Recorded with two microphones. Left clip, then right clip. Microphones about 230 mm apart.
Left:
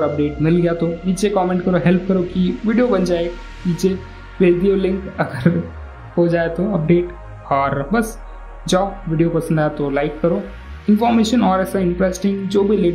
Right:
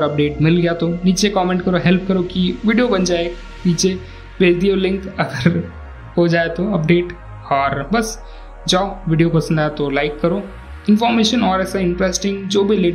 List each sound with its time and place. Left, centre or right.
0.0 s speech: centre